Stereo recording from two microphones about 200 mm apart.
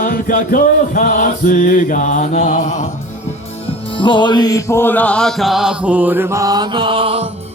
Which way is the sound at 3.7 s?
25° left (ahead or behind).